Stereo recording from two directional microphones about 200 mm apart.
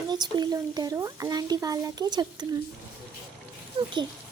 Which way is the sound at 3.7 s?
30° right (ahead or behind).